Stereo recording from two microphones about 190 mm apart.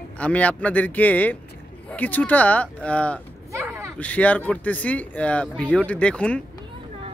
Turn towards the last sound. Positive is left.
turn(degrees=5)  # may be behind; listen again after turning